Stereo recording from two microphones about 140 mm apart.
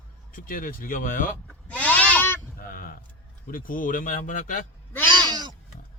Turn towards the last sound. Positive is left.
turn(degrees=-30)  # may be behind; listen again after turning